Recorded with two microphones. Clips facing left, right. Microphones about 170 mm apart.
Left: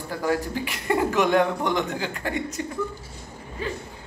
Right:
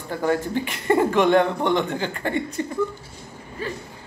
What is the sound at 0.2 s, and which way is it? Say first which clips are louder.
A man's voice: right 3 dB; 5° left (ahead or behind).